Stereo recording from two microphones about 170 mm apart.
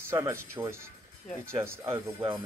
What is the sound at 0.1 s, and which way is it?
Speech, 15° right (ahead or behind).